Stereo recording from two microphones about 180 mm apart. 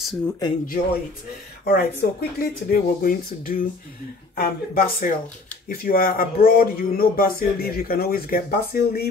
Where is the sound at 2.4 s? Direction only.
55° left (ahead or behind).